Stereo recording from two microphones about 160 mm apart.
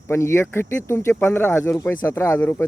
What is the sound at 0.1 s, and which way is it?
Speech, 15° left (ahead or behind).